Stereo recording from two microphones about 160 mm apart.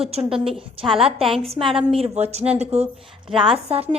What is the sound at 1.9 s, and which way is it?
Speech, 40° right (ahead or behind).